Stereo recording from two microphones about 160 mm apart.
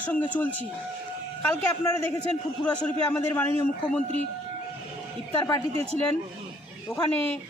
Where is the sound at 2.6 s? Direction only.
10° left (ahead or behind).